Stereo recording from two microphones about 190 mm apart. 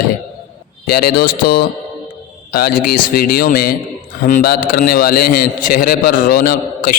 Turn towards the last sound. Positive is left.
turn(degrees=50)  # may be behind; listen again after turning